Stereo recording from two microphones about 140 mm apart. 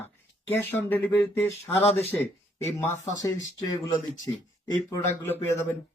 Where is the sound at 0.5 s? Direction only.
15° left (ahead or behind).